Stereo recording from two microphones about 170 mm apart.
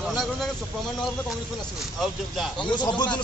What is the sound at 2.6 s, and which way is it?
Speech, 25° left (ahead or behind).